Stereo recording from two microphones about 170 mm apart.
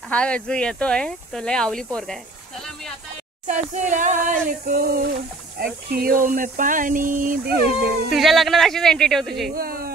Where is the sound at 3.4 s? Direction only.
45° right (ahead or behind).